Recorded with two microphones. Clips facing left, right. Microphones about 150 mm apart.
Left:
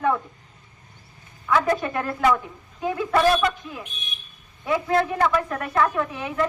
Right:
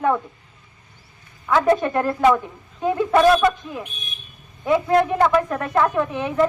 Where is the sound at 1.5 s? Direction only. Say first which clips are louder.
Right 4 dB; 25° right (ahead or behind).